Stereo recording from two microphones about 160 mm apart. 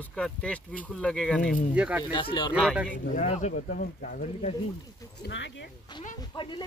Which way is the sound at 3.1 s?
45° left (ahead or behind).